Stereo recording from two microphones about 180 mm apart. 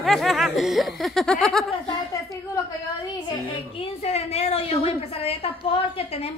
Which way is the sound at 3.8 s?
35° left (ahead or behind).